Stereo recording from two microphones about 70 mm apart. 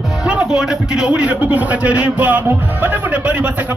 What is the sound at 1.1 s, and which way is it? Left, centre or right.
Speech, centre.